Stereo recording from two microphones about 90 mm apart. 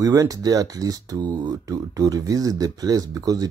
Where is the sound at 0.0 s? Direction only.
40° right (ahead or behind).